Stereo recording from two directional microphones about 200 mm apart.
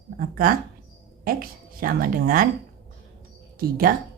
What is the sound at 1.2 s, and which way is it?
Speech, 45° right (ahead or behind).